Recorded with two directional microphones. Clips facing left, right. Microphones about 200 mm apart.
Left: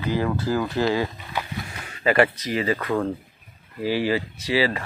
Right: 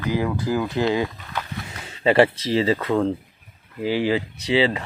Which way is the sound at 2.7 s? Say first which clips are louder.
Right 3 dB; 20° right (ahead or behind).